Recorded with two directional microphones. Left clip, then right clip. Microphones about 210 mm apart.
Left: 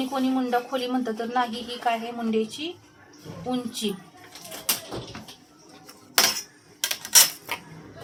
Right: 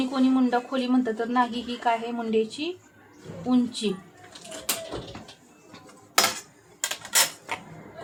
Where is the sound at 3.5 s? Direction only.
30° right (ahead or behind).